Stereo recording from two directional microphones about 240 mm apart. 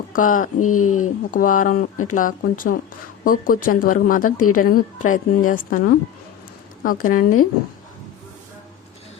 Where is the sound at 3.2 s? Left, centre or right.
Left.